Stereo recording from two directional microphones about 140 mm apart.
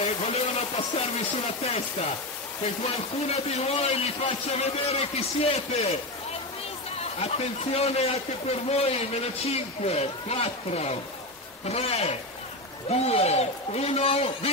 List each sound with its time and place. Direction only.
0.0 s a sound: 50° left (ahead or behind)
2.6 s a man's voice: 50° left (ahead or behind)
7.2 s a man's voice: 50° left (ahead or behind)